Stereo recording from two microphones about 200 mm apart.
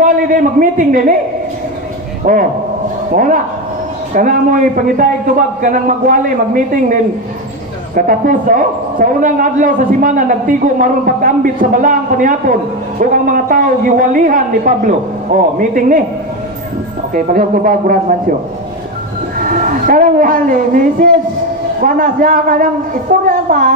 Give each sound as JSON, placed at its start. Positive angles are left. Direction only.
{"t": 0.0, "sound": "a man's voice", "side_deg": -40}
{"t": 2.3, "sound": "a man's voice", "side_deg": -40}
{"t": 4.1, "sound": "a man's voice", "side_deg": -40}
{"t": 17.1, "sound": "a man's voice", "side_deg": -45}
{"t": 19.3, "sound": "a woman's voice", "side_deg": -45}